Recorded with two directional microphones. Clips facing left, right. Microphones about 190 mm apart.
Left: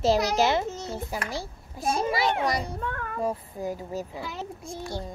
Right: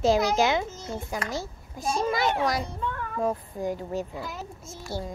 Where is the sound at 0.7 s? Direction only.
70° left (ahead or behind).